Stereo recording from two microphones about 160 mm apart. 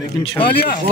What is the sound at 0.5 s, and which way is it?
Speech, 65° left (ahead or behind).